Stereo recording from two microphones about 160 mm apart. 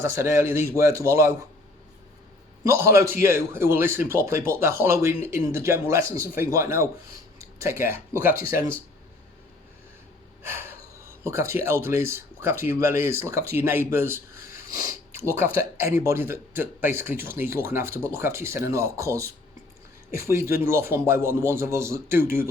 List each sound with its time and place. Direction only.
0.0 s speech: 15° right (ahead or behind)
2.6 s speech: 15° right (ahead or behind)
10.4 s speech: 15° right (ahead or behind)